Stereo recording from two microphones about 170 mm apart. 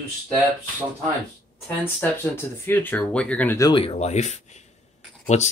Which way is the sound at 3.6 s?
35° left (ahead or behind).